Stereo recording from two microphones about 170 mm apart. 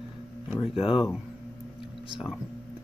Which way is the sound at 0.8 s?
35° left (ahead or behind).